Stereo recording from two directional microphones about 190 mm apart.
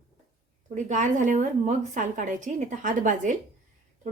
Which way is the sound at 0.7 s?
40° right (ahead or behind).